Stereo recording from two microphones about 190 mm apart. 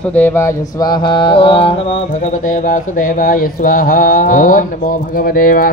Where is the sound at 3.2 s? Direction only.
45° left (ahead or behind).